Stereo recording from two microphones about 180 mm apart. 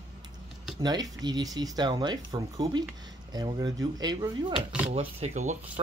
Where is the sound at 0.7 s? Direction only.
20° right (ahead or behind).